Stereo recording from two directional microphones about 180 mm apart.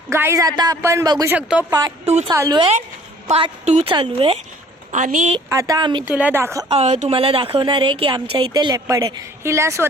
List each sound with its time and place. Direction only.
0.1 s a man's voice: 15° right (ahead or behind)
1.3 s a man's voice: 5° right (ahead or behind)
2.0 s a woman's voice: 35° right (ahead or behind)
2.3 s a man's voice: 15° right (ahead or behind)
2.6 s a woman's voice: 35° right (ahead or behind)
4.9 s a woman's voice: 45° right (ahead or behind)
5.5 s a woman's voice: 20° right (ahead or behind)
6.1 s a man's voice: 10° right (ahead or behind)
6.7 s a woman's voice: 35° right (ahead or behind); by 9.9 s 15° right (ahead or behind)